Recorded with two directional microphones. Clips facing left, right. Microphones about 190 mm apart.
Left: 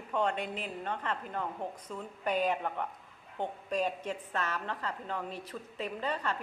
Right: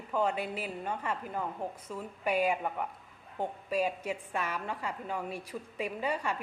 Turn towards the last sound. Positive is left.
turn(degrees=-10)  # may be behind; listen again after turning